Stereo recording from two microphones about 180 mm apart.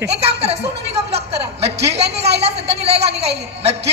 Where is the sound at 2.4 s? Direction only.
35° right (ahead or behind).